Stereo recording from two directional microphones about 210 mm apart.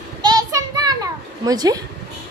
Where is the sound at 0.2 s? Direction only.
20° right (ahead or behind).